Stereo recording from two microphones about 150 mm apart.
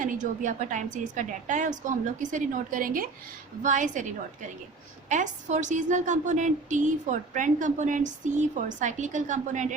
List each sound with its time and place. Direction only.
0.0 s a woman's voice: 60° right (ahead or behind)